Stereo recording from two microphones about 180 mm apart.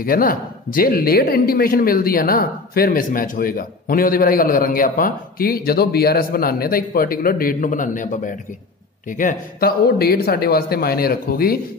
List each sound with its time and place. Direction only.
0.0 s speech: 50° left (ahead or behind)